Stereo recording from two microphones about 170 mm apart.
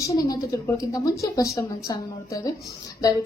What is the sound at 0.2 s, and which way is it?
A woman's voice, 20° left (ahead or behind).